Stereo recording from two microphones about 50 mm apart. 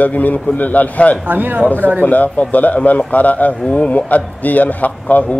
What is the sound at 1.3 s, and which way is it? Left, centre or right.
Speech, right.